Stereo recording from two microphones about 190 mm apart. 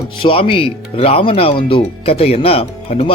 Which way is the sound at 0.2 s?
25° left (ahead or behind).